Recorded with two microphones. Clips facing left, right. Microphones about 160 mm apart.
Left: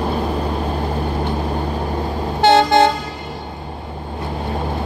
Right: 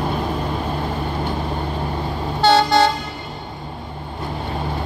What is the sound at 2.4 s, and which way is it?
Toot, 55° left (ahead or behind).